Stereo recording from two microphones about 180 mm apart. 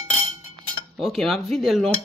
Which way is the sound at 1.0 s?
Centre (ahead or behind).